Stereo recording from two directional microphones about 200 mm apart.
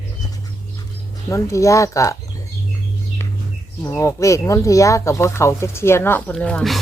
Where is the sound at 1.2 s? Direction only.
15° left (ahead or behind).